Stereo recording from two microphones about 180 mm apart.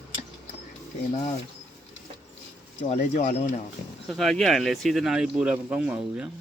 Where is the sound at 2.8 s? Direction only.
50° left (ahead or behind).